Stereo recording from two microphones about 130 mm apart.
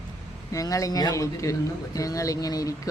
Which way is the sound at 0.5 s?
25° left (ahead or behind).